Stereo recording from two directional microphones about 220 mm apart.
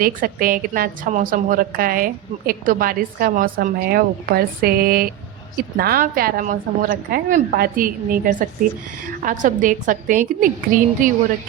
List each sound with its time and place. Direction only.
0.0 s a woman's voice: 40° right (ahead or behind)